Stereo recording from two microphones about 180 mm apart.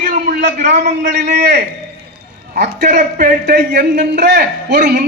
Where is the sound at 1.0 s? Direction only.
70° right (ahead or behind).